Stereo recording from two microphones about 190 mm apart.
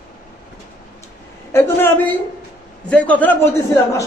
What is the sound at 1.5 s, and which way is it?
A man's voice, 10° left (ahead or behind).